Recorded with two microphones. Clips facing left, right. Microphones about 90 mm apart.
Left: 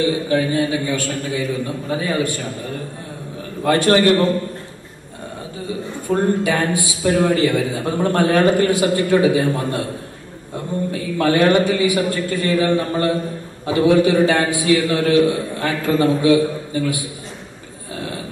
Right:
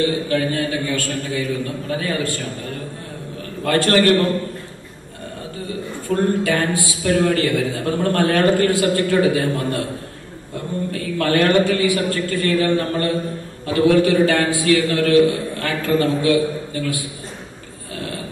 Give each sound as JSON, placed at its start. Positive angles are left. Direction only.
{"t": 0.3, "sound": "a man's voice", "side_deg": 20}
{"t": 3.6, "sound": "a man's voice", "side_deg": 15}
{"t": 6.0, "sound": "a man's voice", "side_deg": 20}
{"t": 10.9, "sound": "a man's voice", "side_deg": 20}